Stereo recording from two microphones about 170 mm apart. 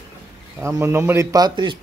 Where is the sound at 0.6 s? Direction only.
15° right (ahead or behind).